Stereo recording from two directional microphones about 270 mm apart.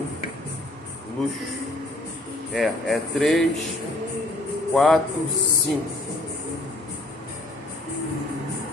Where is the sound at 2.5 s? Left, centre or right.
Centre.